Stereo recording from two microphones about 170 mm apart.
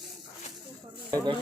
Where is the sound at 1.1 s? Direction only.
25° right (ahead or behind).